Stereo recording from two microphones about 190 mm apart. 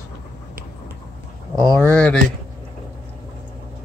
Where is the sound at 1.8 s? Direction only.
5° left (ahead or behind).